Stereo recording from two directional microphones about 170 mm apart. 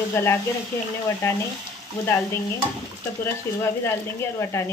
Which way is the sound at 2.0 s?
15° left (ahead or behind).